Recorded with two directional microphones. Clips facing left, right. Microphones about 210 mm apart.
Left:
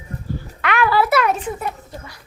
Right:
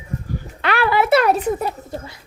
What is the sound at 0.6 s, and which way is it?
Speech, 30° right (ahead or behind).